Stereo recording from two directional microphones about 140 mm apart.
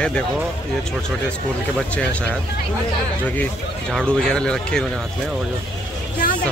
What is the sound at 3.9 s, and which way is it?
Speech, 5° left (ahead or behind).